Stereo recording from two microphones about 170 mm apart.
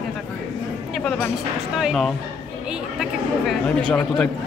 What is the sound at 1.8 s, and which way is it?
A man's voice, centre (ahead or behind).